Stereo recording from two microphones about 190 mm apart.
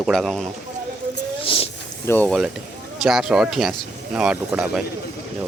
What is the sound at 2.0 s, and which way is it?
Speech, 10° left (ahead or behind).